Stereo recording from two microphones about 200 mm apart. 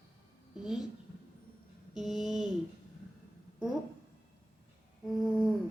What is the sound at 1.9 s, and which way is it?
Speech, centre (ahead or behind).